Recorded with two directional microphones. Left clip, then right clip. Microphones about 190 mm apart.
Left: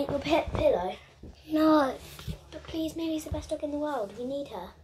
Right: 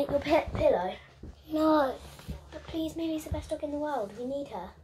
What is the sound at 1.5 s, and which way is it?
Speech, 25° left (ahead or behind).